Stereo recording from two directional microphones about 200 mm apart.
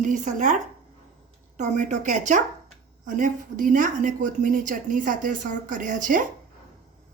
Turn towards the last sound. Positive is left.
turn(degrees=-40)  # may be behind; listen again after turning